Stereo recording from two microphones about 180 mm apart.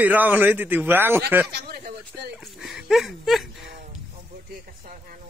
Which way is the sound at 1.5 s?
60° right (ahead or behind).